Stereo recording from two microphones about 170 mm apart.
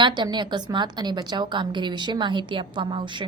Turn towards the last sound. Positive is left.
turn(degrees=-25)  # may be behind; listen again after turning